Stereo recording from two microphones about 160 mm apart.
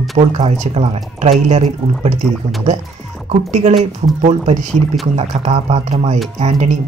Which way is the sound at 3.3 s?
45° right (ahead or behind).